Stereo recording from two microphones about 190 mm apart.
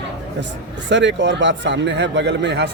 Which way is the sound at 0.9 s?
70° right (ahead or behind).